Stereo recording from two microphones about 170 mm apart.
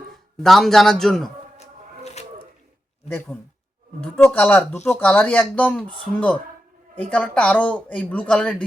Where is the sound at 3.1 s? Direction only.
10° left (ahead or behind).